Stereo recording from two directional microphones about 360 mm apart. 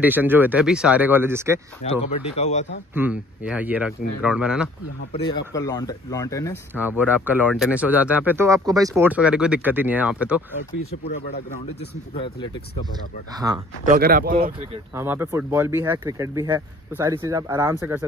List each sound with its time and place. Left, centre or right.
0.0 s speech: centre
1.8 s speech: centre
2.9 s speech: centre
5.1 s speech: centre
6.7 s speech: centre
13.4 s speech: centre
13.8 s speech: right
15.0 s speech: centre